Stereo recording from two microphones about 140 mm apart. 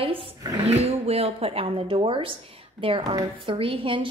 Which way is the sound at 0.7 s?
45° right (ahead or behind).